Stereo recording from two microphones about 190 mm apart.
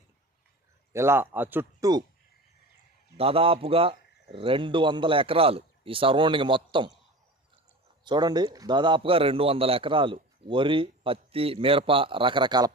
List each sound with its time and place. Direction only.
0.9 s speech: 15° right (ahead or behind)
3.2 s a man's voice: 30° right (ahead or behind)
8.0 s a man's voice: 20° right (ahead or behind)